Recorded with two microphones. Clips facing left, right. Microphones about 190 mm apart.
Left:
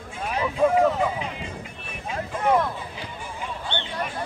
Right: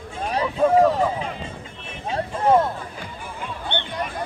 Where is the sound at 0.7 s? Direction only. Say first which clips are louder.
Right 3 dB; 35° right (ahead or behind).